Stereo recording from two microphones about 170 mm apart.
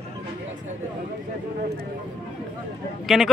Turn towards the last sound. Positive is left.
turn(degrees=0)  # may be behind; listen again after turning